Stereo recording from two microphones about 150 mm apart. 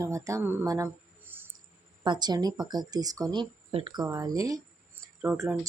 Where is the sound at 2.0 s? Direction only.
30° right (ahead or behind).